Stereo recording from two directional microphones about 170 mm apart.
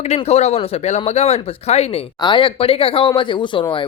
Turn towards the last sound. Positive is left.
turn(degrees=30)  # may be behind; listen again after turning